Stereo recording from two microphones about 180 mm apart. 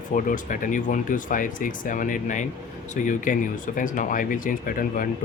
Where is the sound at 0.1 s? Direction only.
45° left (ahead or behind).